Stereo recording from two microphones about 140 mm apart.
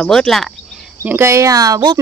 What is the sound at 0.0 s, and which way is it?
Speech, 5° left (ahead or behind).